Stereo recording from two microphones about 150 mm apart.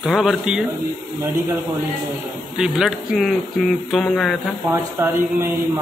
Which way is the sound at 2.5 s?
5° right (ahead or behind).